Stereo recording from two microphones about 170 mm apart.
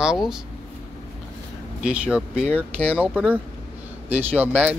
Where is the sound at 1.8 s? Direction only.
5° right (ahead or behind).